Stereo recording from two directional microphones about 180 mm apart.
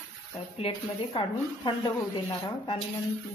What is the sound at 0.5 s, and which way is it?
Speech, 30° left (ahead or behind).